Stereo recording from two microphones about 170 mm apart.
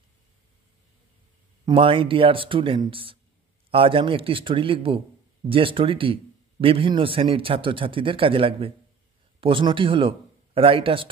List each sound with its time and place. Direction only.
1.7 s a man's voice: 30° right (ahead or behind)